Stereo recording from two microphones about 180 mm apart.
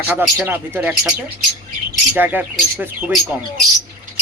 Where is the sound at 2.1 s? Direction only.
10° right (ahead or behind).